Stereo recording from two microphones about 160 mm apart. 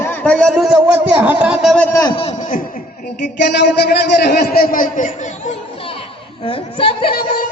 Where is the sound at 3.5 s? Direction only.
90° left; by 5.1 s 55° left (ahead or behind).